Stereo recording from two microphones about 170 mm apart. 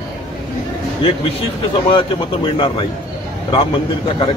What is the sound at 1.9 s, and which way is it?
Speech, 30° left (ahead or behind).